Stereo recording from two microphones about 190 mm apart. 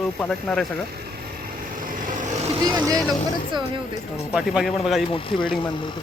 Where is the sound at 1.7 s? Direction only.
45° right (ahead or behind).